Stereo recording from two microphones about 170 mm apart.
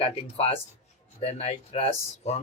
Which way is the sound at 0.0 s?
35° left (ahead or behind).